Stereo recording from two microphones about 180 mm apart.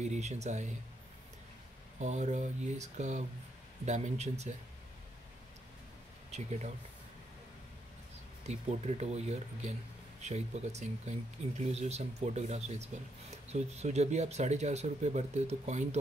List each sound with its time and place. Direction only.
0.0 s speech: 40° right (ahead or behind)
2.0 s speech: 40° right (ahead or behind)
8.5 s speech: 35° right (ahead or behind)